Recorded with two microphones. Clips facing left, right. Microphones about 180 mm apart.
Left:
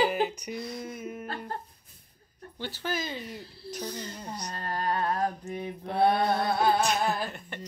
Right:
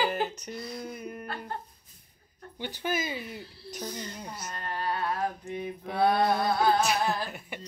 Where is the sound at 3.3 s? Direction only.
5° right (ahead or behind).